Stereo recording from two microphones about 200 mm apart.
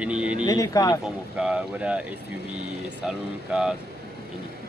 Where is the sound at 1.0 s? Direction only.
5° right (ahead or behind).